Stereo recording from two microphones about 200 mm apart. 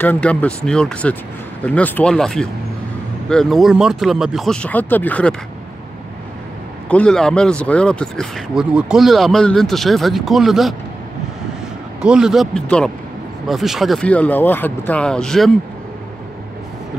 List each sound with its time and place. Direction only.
0.0 s speech: 10° left (ahead or behind)
6.9 s speech: 5° left (ahead or behind)
12.0 s speech: 5° right (ahead or behind)